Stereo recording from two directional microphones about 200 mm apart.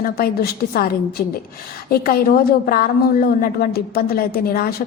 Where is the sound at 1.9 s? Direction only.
50° left (ahead or behind).